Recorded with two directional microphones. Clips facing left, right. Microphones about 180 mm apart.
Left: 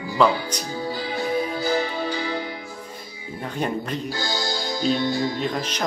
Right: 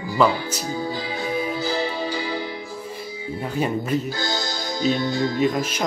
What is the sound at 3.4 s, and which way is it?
Speech, 5° right (ahead or behind).